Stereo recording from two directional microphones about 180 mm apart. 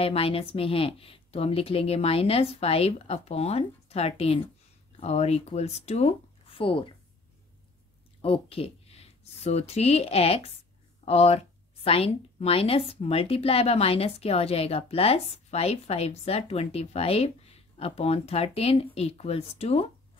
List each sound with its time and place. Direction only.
0.0 s a woman's voice: 30° left (ahead or behind)
8.2 s a woman's voice: 30° left (ahead or behind)